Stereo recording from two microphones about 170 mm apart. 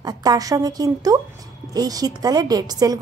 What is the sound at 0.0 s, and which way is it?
Speech, 20° right (ahead or behind).